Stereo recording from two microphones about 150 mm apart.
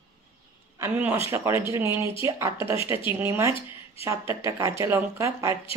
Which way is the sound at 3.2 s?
20° right (ahead or behind).